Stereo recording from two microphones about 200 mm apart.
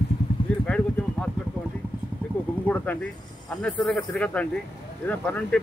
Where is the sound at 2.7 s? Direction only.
10° left (ahead or behind).